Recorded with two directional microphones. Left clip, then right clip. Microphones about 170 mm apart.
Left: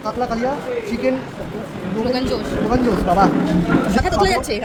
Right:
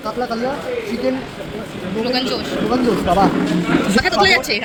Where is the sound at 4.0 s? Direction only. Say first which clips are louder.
Right 6 dB; 15° left (ahead or behind).